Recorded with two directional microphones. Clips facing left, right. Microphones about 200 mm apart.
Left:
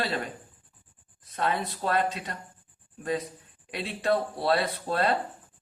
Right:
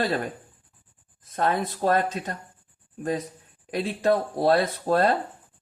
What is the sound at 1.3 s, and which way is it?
Speech, 45° right (ahead or behind).